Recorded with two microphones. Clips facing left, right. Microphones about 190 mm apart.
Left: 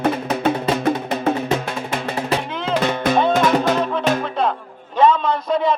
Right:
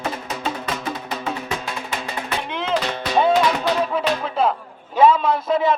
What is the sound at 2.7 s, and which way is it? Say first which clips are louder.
Music: left 3 dB; 50° left (ahead or behind).